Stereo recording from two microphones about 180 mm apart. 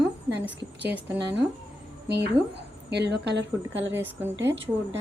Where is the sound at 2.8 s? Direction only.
70° right (ahead or behind).